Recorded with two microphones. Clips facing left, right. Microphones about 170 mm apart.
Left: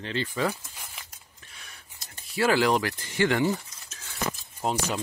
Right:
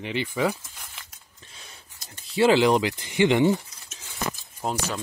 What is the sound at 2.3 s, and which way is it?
Speech, 20° right (ahead or behind).